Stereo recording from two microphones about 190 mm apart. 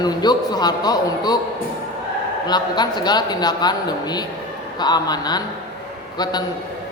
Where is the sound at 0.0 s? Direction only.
20° left (ahead or behind).